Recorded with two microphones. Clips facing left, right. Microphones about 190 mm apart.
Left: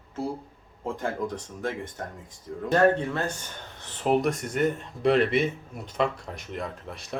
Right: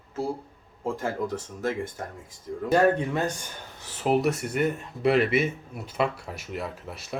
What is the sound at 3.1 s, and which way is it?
Speech, 15° right (ahead or behind).